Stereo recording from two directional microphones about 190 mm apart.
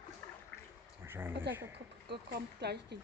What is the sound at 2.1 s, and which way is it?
Speech, 60° right (ahead or behind).